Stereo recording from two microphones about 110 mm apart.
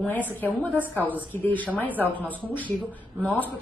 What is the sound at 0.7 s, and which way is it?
Speech, 15° right (ahead or behind).